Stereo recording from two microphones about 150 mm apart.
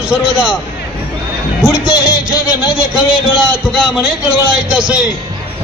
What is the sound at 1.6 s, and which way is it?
A man's voice, 5° right (ahead or behind).